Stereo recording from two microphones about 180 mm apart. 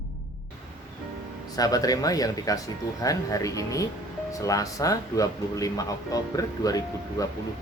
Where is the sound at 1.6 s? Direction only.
20° left (ahead or behind).